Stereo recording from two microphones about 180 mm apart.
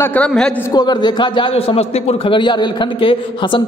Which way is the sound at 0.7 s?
25° left (ahead or behind).